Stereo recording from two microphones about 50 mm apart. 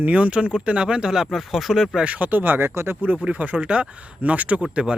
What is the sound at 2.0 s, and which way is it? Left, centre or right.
Speech, right.